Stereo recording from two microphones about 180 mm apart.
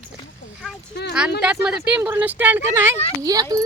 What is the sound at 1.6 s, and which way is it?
Speech, 5° right (ahead or behind).